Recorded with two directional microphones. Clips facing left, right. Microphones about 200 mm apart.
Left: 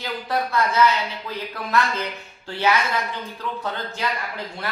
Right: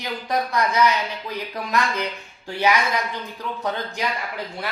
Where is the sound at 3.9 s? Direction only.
15° right (ahead or behind).